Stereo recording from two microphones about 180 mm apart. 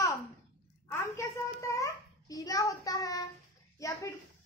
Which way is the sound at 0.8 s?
15° left (ahead or behind).